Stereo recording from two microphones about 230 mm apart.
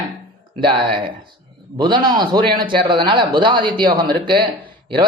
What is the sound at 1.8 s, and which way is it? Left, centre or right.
Speech, centre.